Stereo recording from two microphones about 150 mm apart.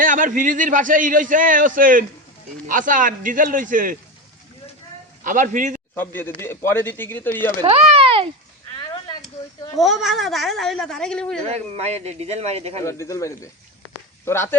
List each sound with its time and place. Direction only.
0.0 s a man's voice: 60° right (ahead or behind)
5.2 s a man's voice: 60° right (ahead or behind)
5.9 s speech: 15° left (ahead or behind)
7.6 s a sound: 40° right (ahead or behind)
9.7 s speech: centre (ahead or behind)
11.4 s speech: 45° right (ahead or behind)
12.8 s speech: 20° left (ahead or behind)